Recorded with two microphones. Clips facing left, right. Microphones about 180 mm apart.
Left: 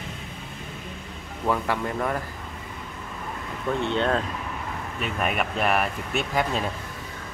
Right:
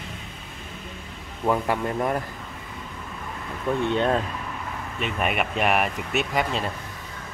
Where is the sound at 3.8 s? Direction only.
10° right (ahead or behind).